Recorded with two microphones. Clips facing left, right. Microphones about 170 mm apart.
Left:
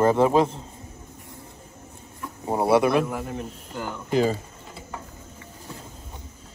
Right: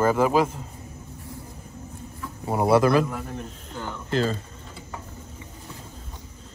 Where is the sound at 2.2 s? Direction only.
20° left (ahead or behind).